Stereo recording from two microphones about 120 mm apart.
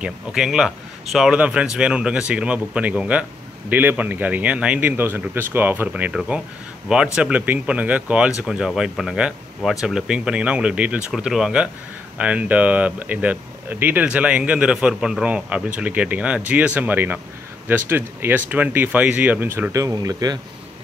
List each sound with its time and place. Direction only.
0.0 s speech: 5° right (ahead or behind); by 20.3 s 30° right (ahead or behind)